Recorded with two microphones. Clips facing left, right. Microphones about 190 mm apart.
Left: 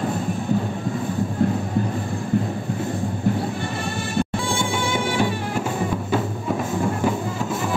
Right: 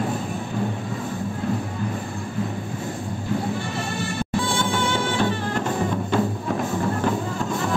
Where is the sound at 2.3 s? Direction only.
65° left (ahead or behind).